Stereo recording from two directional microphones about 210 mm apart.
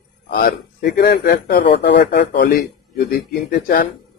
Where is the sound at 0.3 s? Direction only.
45° left (ahead or behind).